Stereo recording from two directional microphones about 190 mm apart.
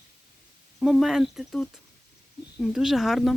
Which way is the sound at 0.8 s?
Centre (ahead or behind).